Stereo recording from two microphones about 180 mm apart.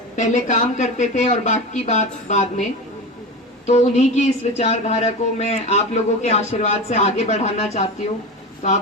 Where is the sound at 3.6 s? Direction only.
40° left (ahead or behind).